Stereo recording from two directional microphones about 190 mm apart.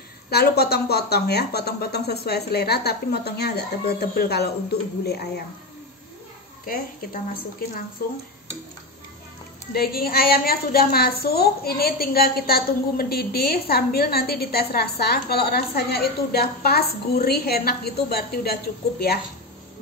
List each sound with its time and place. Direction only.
0.3 s a woman's voice: 55° left (ahead or behind)
6.6 s a woman's voice: 50° left (ahead or behind)
9.8 s a woman's voice: 50° left (ahead or behind)